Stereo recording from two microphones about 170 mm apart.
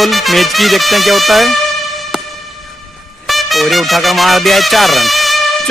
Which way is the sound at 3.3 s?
Centre (ahead or behind).